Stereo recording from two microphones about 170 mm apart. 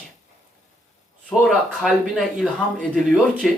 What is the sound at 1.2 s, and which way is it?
Speech, 5° left (ahead or behind).